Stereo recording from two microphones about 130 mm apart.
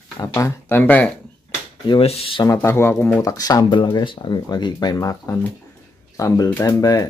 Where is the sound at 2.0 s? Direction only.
50° left (ahead or behind).